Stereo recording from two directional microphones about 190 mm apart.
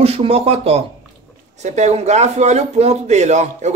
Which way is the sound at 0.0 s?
30° right (ahead or behind).